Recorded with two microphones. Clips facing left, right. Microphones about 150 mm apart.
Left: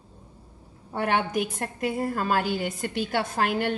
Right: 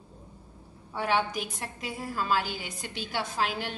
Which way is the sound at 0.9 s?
60° left (ahead or behind).